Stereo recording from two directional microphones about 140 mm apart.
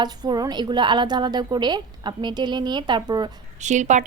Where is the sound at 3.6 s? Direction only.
60° right (ahead or behind).